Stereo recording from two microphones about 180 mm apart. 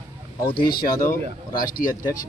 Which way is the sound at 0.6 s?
55° left (ahead or behind).